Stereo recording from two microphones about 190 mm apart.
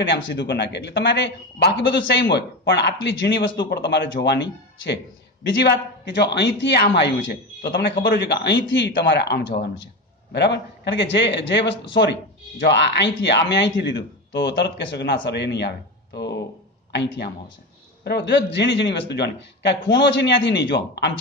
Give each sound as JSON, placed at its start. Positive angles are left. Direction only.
{"t": 0.0, "sound": "speech", "side_deg": 65}
{"t": 16.9, "sound": "speech", "side_deg": 65}